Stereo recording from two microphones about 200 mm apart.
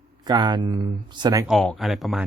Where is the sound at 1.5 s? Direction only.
Centre (ahead or behind).